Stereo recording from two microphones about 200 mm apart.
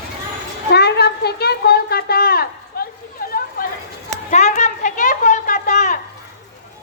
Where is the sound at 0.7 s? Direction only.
55° left (ahead or behind).